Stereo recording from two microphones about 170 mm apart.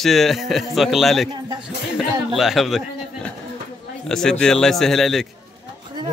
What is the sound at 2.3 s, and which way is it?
A man's voice, centre (ahead or behind).